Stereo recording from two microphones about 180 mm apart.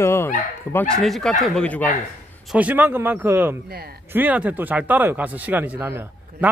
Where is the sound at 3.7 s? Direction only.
60° right (ahead or behind).